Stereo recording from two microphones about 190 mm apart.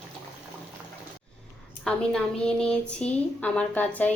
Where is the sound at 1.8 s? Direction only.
5° left (ahead or behind).